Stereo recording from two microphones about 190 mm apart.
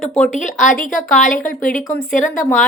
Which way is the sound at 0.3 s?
40° left (ahead or behind).